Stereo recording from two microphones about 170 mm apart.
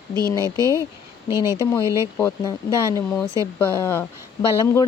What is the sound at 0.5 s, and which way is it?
Speech, 20° right (ahead or behind).